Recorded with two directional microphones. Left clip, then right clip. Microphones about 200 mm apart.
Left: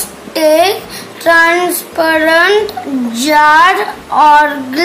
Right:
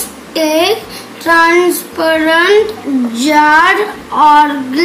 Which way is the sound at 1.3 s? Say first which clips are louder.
Right 2 dB; 45° left (ahead or behind).